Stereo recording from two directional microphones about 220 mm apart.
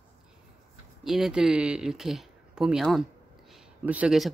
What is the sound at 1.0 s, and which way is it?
Speech, centre (ahead or behind).